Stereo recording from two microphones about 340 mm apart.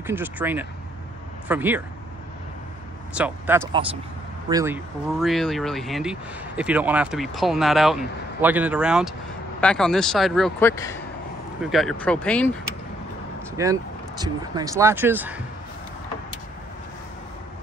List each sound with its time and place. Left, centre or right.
0.0 s speech: centre
3.2 s speech: centre
13.6 s speech: centre